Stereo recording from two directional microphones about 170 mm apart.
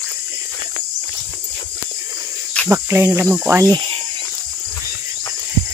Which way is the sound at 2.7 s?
15° right (ahead or behind).